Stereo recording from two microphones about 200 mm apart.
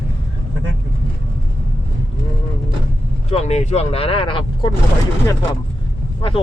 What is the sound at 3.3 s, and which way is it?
Speech, 35° left (ahead or behind).